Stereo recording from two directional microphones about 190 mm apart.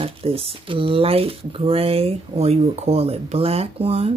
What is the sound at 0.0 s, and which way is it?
Speech, 30° right (ahead or behind).